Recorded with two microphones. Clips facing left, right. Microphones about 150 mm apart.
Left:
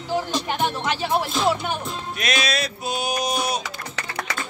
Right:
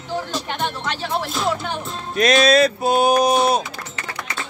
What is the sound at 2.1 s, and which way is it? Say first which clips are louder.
Music: right 12 dB; 45° right (ahead or behind).